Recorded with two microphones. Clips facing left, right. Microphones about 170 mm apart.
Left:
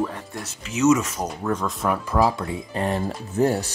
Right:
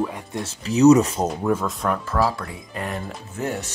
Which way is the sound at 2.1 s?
15° left (ahead or behind).